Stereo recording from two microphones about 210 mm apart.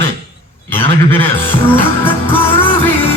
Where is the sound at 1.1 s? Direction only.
10° left (ahead or behind).